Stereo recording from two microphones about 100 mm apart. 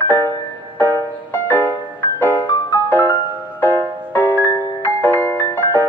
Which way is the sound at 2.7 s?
20° left (ahead or behind).